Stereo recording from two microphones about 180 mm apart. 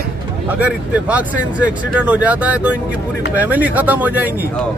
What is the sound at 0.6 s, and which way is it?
Speech, 5° right (ahead or behind).